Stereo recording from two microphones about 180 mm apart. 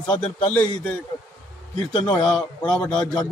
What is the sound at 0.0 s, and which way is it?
Speech, 30° left (ahead or behind).